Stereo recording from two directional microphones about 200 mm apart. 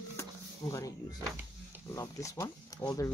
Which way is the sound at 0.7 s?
15° left (ahead or behind).